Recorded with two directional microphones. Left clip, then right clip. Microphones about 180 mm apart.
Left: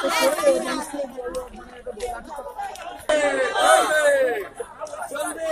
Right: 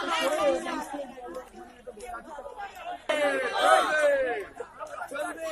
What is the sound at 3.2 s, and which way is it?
Speech, 10° left (ahead or behind).